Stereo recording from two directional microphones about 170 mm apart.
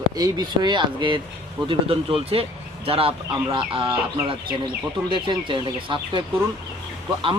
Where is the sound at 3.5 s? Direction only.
30° right (ahead or behind).